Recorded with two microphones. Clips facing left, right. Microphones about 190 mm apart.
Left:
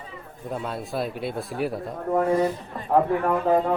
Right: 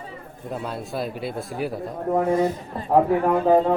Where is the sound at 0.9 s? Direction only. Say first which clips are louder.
Left 1 dB; centre (ahead or behind).